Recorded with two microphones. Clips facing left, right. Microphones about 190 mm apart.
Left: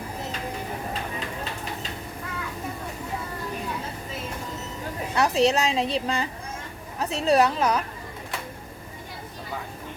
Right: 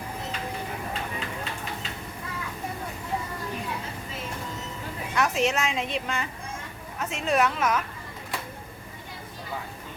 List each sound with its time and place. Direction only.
5.1 s a woman's voice: 35° left (ahead or behind)